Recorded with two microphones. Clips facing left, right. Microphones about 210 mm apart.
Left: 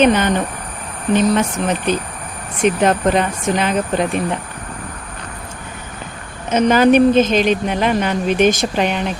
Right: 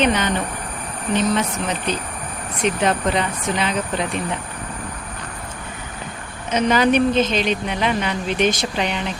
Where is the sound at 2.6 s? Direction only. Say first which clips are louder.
Left 5 dB; 50° left (ahead or behind).